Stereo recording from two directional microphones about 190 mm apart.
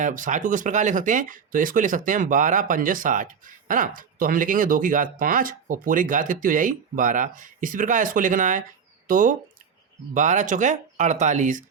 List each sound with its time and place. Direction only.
0.0 s speech: 45° right (ahead or behind)